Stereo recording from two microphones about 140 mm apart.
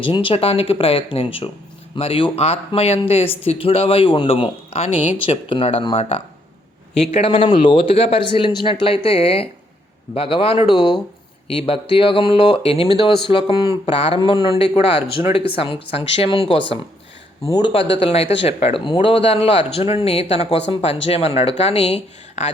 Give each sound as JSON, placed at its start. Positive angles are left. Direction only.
{"t": 0.0, "sound": "a man's voice", "side_deg": 40}
{"t": 14.2, "sound": "a man's voice", "side_deg": 35}
{"t": 17.4, "sound": "speech", "side_deg": 30}
{"t": 17.7, "sound": "speech", "side_deg": 40}